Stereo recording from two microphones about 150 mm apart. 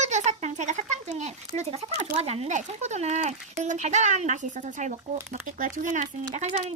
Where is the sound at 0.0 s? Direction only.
50° right (ahead or behind).